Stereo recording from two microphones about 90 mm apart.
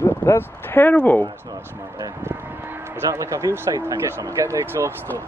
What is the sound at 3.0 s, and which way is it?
Speech, 35° right (ahead or behind).